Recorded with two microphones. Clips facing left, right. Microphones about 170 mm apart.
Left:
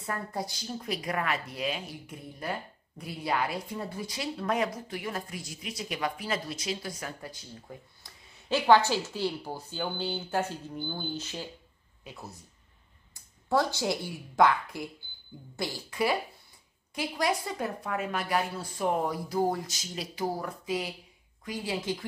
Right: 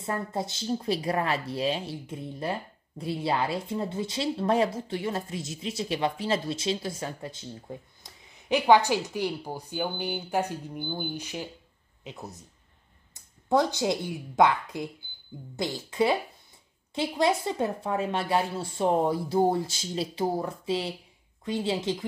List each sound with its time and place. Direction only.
0.0 s speech: 25° right (ahead or behind)